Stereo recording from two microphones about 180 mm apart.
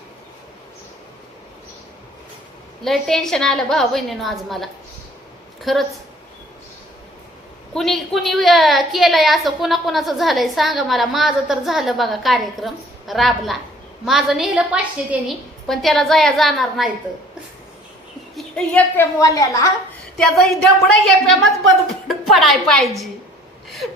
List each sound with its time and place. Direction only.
2.8 s a woman's voice: centre (ahead or behind)
7.7 s a woman's voice: centre (ahead or behind)
18.3 s a woman's voice: 5° left (ahead or behind)
19.2 s a woman's voice: 20° left (ahead or behind)
20.1 s a woman's voice: centre (ahead or behind)